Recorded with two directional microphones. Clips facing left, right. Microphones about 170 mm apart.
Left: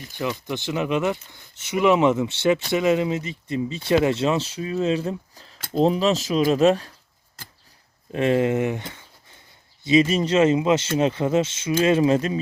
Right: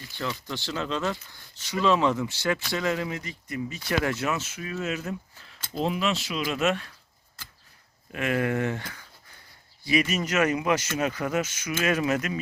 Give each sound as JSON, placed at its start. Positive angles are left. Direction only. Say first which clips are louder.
{"t": 0.1, "sound": "speech", "louder": "left 6 dB", "side_deg": 15}
{"t": 8.1, "sound": "speech", "louder": "left 6 dB", "side_deg": 30}